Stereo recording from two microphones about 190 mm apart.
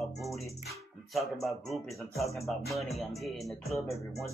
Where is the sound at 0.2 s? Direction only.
Centre (ahead or behind).